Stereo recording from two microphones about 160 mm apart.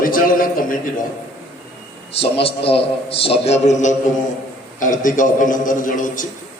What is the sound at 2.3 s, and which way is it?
A man's voice, 35° left (ahead or behind).